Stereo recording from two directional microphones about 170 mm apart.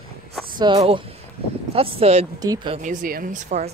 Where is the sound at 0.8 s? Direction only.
35° right (ahead or behind).